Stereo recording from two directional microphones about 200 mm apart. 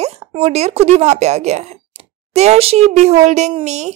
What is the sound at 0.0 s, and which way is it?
Speech, 30° right (ahead or behind).